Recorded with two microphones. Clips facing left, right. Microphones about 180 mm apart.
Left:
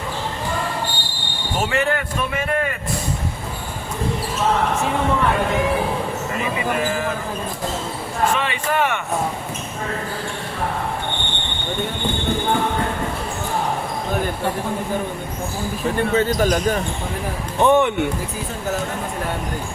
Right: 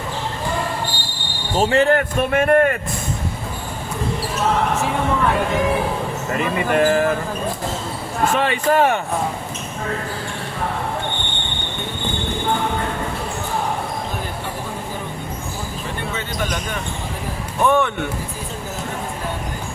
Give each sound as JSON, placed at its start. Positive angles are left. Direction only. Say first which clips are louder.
{"t": 1.5, "sound": "speech", "louder": "right 5 dB", "side_deg": -30}
{"t": 2.0, "sound": "a man's voice", "louder": "right 6 dB", "side_deg": -55}
{"t": 6.7, "sound": "speech", "louder": "right 7 dB", "side_deg": -55}
{"t": 8.4, "sound": "speech", "louder": "right 5 dB", "side_deg": -40}
{"t": 16.1, "sound": "speech", "louder": "left 9 dB", "side_deg": 40}
{"t": 17.6, "sound": "speech", "louder": "left 2 dB", "side_deg": 20}